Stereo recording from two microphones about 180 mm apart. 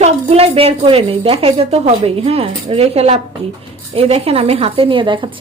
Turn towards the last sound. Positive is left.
turn(degrees=-25)  # may be behind; listen again after turning